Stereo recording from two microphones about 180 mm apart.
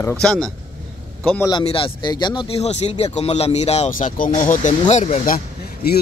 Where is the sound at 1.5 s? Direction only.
30° left (ahead or behind); by 5.4 s 45° left (ahead or behind).